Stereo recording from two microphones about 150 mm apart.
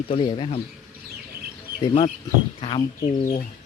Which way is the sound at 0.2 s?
35° left (ahead or behind).